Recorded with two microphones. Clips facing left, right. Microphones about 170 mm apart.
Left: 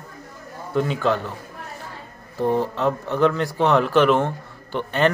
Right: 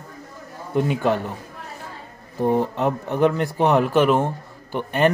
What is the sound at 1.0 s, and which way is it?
Speech, 15° right (ahead or behind).